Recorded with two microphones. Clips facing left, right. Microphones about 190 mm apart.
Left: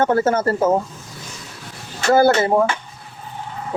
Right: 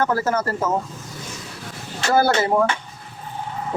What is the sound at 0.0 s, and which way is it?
Speech, 25° left (ahead or behind).